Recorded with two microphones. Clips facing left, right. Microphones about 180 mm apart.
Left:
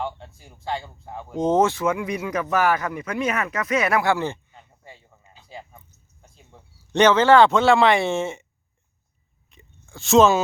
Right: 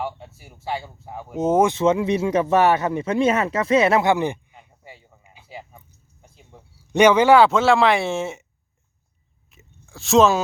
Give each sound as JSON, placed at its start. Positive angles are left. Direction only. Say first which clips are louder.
{"t": 0.3, "sound": "speech", "louder": "even", "side_deg": -10}
{"t": 1.7, "sound": "a man's voice", "louder": "right 5 dB", "side_deg": -25}
{"t": 9.5, "sound": "a sound", "louder": "even", "side_deg": 0}